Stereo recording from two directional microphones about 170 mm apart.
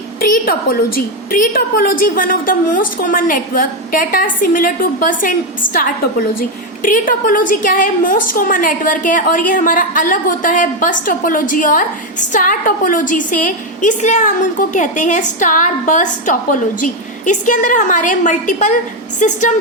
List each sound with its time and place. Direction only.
0.2 s a woman's voice: 60° left (ahead or behind)